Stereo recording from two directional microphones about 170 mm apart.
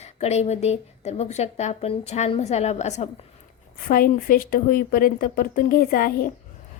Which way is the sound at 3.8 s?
60° left (ahead or behind).